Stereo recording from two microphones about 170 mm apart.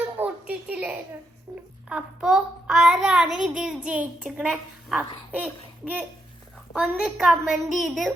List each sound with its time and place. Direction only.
0.2 s a sound: 10° right (ahead or behind)
1.9 s child singing: 5° right (ahead or behind)
6.7 s child singing: 5° right (ahead or behind)